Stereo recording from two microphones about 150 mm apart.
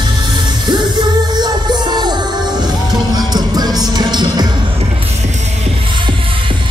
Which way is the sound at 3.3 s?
25° right (ahead or behind).